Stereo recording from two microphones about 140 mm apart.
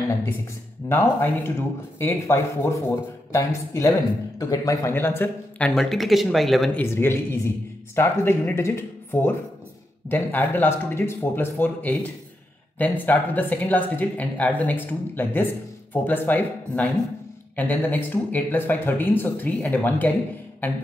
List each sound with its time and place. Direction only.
0.8 s speech: 15° left (ahead or behind)
5.8 s speech: centre (ahead or behind)
6.8 s speech: 15° left (ahead or behind)